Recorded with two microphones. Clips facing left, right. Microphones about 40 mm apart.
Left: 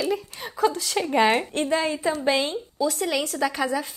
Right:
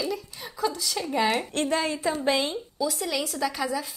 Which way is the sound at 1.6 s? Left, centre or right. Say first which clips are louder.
Left 2 dB; left.